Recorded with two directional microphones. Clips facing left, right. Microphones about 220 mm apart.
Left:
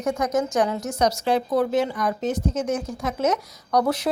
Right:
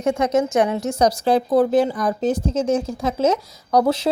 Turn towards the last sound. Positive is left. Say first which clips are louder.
# right 4 dB
turn(degrees=-25)  # may be behind; listen again after turning